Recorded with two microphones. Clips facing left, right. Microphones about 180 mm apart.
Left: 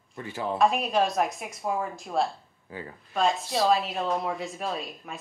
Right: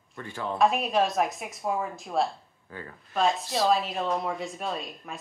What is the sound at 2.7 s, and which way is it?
Speech, 15° left (ahead or behind).